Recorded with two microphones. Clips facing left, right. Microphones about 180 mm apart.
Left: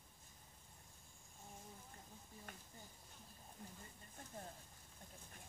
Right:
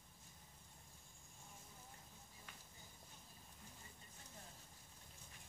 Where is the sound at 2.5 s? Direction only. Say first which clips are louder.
Left 6 dB; 50° left (ahead or behind).